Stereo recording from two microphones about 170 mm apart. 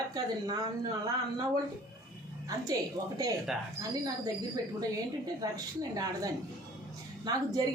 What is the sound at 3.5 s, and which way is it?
Speech, 5° right (ahead or behind).